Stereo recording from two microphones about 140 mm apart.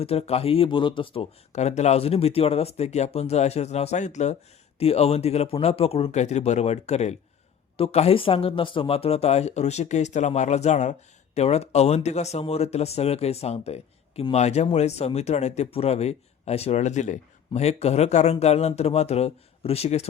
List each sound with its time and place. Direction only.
0.0 s speech: 45° left (ahead or behind)